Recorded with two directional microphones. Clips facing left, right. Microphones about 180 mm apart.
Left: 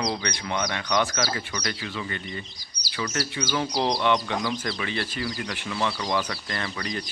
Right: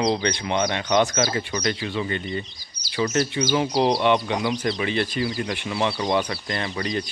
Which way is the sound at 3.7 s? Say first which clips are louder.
Right 3 dB; 15° right (ahead or behind).